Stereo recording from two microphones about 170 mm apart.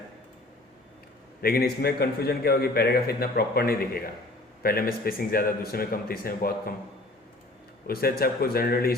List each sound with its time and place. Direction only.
1.4 s a man's voice: 65° left (ahead or behind)
7.9 s a man's voice: 60° left (ahead or behind)